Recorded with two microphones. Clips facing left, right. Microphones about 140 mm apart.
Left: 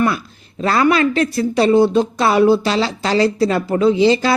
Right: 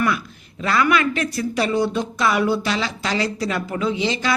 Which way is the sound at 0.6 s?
35° left (ahead or behind).